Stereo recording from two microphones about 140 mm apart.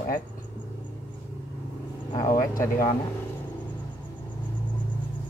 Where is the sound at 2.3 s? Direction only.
80° left.